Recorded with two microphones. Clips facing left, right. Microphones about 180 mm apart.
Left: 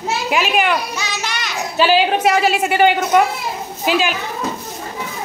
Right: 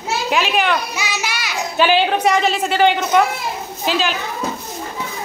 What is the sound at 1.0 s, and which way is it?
A child's voice, 5° right (ahead or behind).